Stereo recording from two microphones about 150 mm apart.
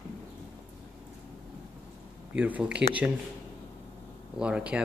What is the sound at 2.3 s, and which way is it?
Speech, 10° right (ahead or behind).